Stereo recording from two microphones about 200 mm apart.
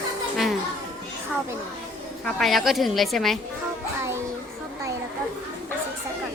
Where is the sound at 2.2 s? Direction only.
Centre (ahead or behind).